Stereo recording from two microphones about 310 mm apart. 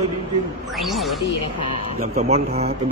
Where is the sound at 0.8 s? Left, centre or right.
Centre.